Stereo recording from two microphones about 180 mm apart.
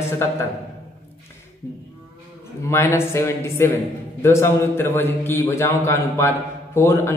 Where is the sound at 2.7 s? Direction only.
15° left (ahead or behind).